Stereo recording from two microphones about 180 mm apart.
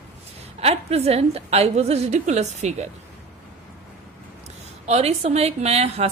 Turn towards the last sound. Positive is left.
turn(degrees=-35)  # may be behind; listen again after turning